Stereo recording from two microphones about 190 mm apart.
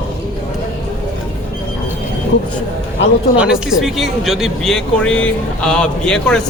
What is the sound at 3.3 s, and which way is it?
Speech, 5° right (ahead or behind).